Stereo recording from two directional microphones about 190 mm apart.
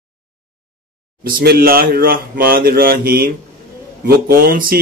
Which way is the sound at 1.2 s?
50° right (ahead or behind).